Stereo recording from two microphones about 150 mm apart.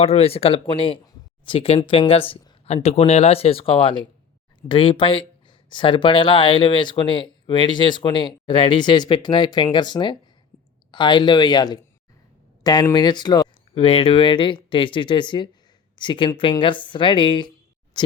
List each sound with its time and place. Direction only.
0.0 s speech: 45° left (ahead or behind)